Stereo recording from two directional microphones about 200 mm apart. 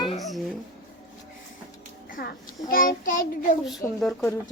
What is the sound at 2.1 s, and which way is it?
A child's voice, 45° left (ahead or behind).